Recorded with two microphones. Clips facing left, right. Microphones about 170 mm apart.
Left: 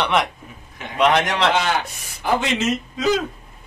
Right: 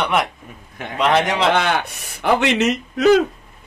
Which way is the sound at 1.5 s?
60° right (ahead or behind).